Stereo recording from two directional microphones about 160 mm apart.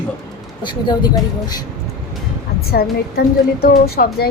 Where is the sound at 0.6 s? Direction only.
25° left (ahead or behind).